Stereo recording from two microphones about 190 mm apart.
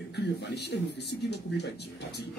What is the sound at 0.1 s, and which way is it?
Speech, 60° left (ahead or behind).